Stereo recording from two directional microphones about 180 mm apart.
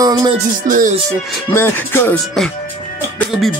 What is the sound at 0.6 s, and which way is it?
Speech, 50° right (ahead or behind).